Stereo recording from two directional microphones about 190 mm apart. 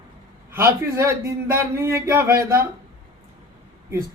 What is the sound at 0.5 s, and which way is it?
Speech, 15° right (ahead or behind).